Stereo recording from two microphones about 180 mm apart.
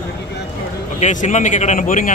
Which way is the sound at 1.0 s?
40° left (ahead or behind).